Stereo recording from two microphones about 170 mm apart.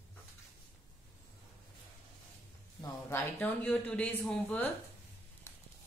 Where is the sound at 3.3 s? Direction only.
10° left (ahead or behind).